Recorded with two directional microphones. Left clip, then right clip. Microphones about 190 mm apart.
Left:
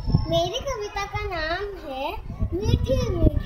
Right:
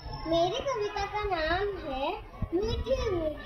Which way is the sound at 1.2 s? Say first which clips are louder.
Even; 20° left (ahead or behind).